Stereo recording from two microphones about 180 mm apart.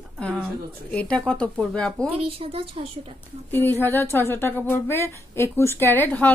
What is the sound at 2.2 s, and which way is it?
Speech, 30° right (ahead or behind).